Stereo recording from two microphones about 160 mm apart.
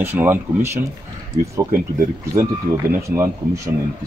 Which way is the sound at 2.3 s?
15° right (ahead or behind).